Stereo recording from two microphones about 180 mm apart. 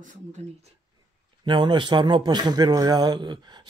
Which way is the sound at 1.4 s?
25° right (ahead or behind).